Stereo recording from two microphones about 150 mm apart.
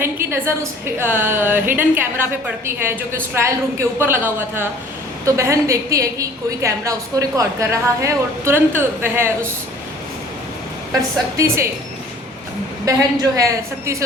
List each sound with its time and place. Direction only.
0.0 s a sound: 15° right (ahead or behind)
0.9 s a woman's voice: 15° right (ahead or behind)
11.3 s a woman's voice: 20° right (ahead or behind)
12.9 s a woman's voice: 20° right (ahead or behind)